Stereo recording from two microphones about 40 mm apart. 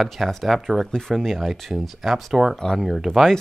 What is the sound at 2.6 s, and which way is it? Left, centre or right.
Speech, centre.